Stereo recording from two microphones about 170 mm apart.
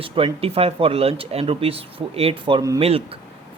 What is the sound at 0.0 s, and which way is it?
Speech, 35° right (ahead or behind).